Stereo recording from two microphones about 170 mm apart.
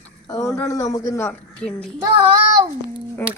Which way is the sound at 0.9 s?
15° left (ahead or behind).